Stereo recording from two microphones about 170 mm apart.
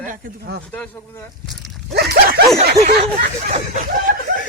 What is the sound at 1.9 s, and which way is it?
Dog, 70° right (ahead or behind).